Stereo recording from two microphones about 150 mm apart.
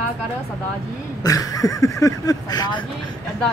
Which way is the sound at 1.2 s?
25° left (ahead or behind).